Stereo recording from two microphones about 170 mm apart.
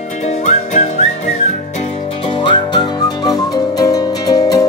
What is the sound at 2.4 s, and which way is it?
Music, 25° left (ahead or behind).